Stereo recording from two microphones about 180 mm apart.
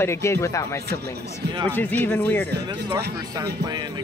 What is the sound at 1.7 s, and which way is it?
Speech, 10° left (ahead or behind).